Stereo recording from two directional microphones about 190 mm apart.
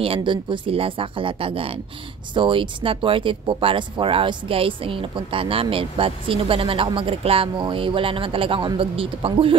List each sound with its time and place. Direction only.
0.0 s speech: 25° right (ahead or behind)